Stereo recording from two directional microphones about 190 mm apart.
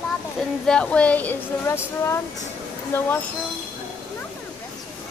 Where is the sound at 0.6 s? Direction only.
5° left (ahead or behind).